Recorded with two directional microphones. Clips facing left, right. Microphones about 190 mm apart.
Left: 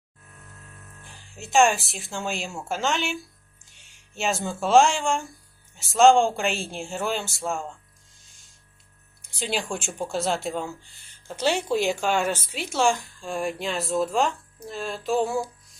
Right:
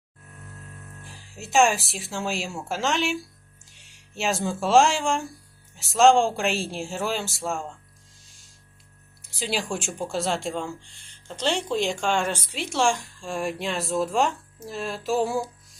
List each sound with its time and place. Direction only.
1.0 s speech: centre (ahead or behind)
9.2 s speech: centre (ahead or behind)